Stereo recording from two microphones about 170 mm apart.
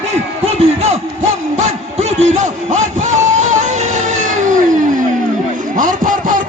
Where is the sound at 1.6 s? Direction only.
45° right (ahead or behind).